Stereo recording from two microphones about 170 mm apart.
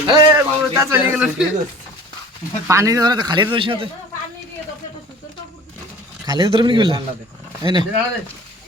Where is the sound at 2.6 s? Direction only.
20° right (ahead or behind).